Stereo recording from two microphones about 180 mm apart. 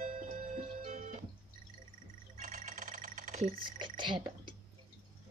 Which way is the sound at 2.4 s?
45° right (ahead or behind).